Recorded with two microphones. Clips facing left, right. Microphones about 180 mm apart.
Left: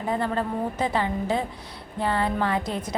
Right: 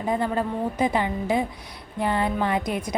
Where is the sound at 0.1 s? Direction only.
15° right (ahead or behind).